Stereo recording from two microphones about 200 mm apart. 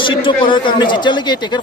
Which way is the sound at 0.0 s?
25° left (ahead or behind).